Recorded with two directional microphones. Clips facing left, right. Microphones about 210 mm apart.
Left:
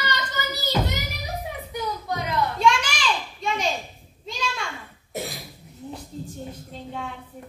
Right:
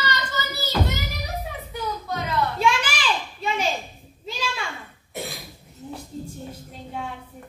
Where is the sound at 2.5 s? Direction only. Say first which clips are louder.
Left 1 dB; 5° right (ahead or behind).